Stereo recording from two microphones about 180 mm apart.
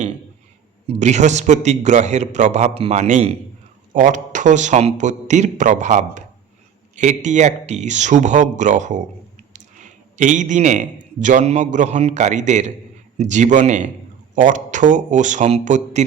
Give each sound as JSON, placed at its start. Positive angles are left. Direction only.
{"t": 0.9, "sound": "a man's voice", "side_deg": -40}